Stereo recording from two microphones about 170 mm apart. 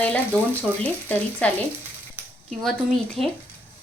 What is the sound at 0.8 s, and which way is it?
Speech, 10° left (ahead or behind).